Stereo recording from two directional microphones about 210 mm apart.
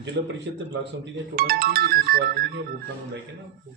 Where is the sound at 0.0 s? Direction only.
55° right (ahead or behind).